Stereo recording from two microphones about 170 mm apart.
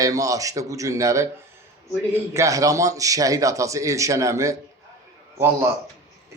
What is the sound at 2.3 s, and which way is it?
Speech, 20° right (ahead or behind).